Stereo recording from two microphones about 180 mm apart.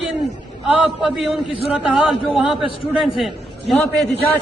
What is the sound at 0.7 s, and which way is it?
A man's voice, 5° right (ahead or behind).